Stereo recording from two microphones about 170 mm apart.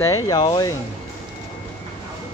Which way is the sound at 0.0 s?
20° left (ahead or behind).